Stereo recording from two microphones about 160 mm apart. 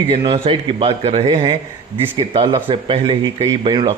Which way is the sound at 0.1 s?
30° right (ahead or behind).